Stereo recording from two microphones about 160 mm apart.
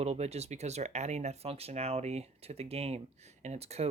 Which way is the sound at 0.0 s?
40° right (ahead or behind).